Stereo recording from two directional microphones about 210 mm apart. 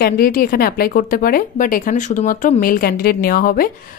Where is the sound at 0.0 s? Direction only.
45° left (ahead or behind).